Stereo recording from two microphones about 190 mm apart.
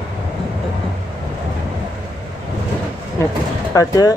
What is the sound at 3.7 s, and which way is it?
Speech, 20° left (ahead or behind).